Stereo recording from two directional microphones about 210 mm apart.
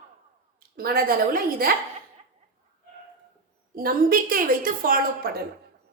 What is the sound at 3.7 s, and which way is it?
A woman's voice, 45° right (ahead or behind).